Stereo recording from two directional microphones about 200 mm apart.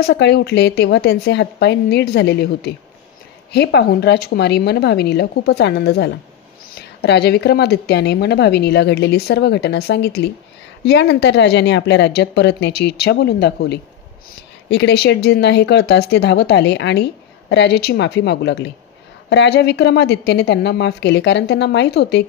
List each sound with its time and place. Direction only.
0.0 s speech: 60° left (ahead or behind)